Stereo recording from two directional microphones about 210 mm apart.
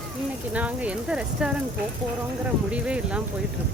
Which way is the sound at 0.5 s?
5° right (ahead or behind).